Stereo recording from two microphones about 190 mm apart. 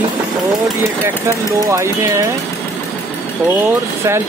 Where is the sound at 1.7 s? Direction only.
15° right (ahead or behind).